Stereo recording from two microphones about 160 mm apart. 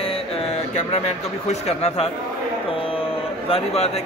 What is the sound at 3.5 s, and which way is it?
Speech, 40° left (ahead or behind).